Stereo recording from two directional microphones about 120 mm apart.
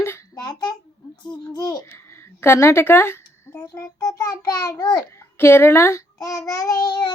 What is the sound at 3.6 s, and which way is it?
A child's voice, 25° left (ahead or behind).